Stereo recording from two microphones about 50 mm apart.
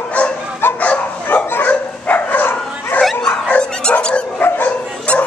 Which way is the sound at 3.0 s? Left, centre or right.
Centre.